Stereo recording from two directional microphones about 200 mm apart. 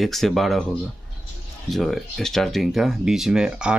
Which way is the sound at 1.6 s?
Centre (ahead or behind).